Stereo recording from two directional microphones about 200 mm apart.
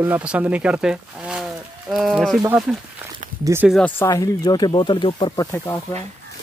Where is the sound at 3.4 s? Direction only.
10° right (ahead or behind).